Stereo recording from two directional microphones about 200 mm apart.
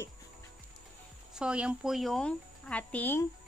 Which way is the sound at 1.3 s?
5° right (ahead or behind).